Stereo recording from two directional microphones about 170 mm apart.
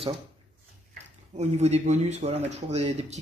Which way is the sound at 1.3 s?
40° right (ahead or behind).